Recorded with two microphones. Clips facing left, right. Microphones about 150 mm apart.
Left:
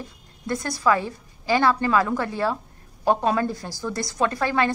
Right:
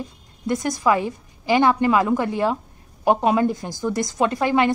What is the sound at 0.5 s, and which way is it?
A woman's voice, 20° right (ahead or behind).